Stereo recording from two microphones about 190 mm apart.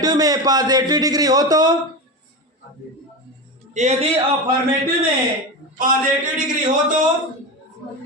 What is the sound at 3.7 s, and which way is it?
Speech, 40° right (ahead or behind).